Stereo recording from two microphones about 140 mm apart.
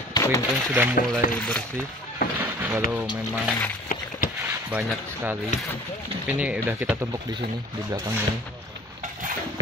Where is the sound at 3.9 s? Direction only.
75° left (ahead or behind).